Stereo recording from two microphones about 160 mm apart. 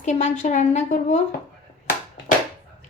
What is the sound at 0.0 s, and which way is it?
A woman's voice, 45° left (ahead or behind).